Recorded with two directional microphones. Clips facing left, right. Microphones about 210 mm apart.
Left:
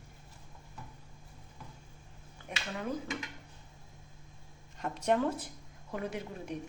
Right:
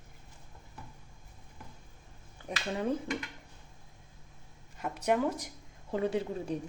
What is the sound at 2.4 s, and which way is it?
Speech, 30° right (ahead or behind).